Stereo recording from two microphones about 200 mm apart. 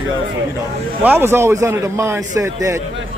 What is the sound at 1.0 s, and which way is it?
A man's voice, 10° right (ahead or behind).